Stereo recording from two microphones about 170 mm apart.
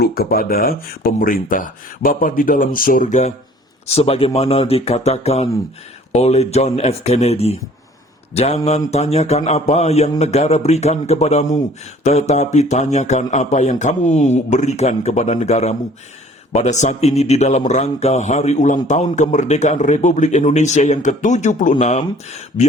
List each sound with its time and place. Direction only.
0.0 s a man's voice: 65° left (ahead or behind); by 22.0 s 45° left (ahead or behind)